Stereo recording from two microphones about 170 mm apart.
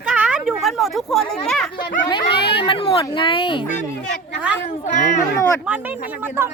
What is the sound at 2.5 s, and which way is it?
Speech, 30° left (ahead or behind).